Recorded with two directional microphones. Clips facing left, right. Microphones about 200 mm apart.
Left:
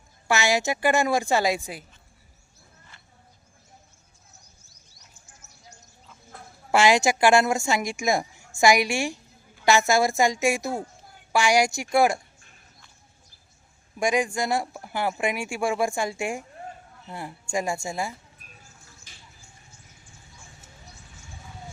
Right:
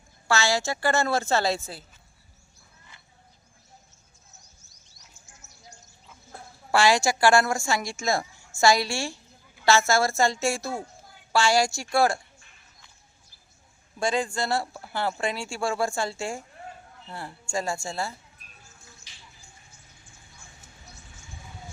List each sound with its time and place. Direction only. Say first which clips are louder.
0.3 s speech: left 2 dB; 20° left (ahead or behind)
6.7 s a woman's voice: left 2 dB; 20° left (ahead or behind)
14.0 s speech: left 2 dB; 15° left (ahead or behind)
19.1 s a sound: left 3 dB; 50° left (ahead or behind)